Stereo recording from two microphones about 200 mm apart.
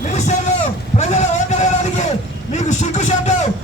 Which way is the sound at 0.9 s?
35° left (ahead or behind).